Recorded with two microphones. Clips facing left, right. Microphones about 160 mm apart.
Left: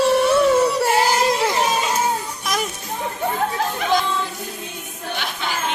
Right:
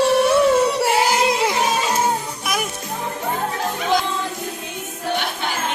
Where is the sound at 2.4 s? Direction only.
10° right (ahead or behind).